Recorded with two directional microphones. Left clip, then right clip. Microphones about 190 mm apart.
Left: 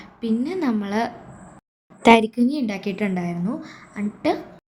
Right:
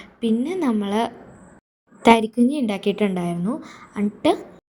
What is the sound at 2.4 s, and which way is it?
A woman's voice, 15° right (ahead or behind).